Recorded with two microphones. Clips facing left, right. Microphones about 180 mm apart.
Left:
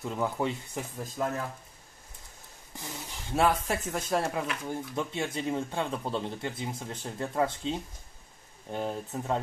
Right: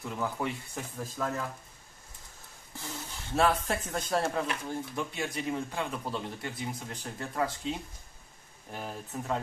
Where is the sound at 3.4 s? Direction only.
10° left (ahead or behind).